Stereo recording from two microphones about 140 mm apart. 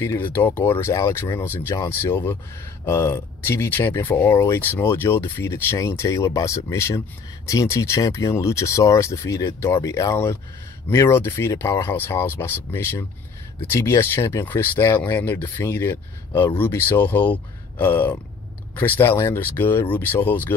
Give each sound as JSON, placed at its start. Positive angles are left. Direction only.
{"t": 0.0, "sound": "speech", "side_deg": 20}